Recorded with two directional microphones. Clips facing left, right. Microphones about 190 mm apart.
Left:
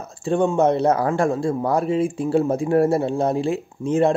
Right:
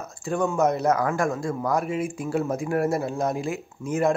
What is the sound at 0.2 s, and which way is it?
Speech, 30° left (ahead or behind).